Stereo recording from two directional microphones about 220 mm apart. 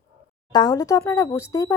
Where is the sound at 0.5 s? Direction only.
20° left (ahead or behind).